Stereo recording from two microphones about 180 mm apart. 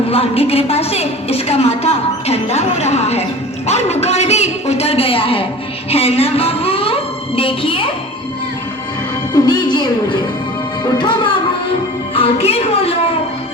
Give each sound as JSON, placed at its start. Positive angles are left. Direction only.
{"t": 0.1, "sound": "a woman's voice", "side_deg": 35}
{"t": 5.9, "sound": "music", "side_deg": 35}
{"t": 9.3, "sound": "a woman's voice", "side_deg": 25}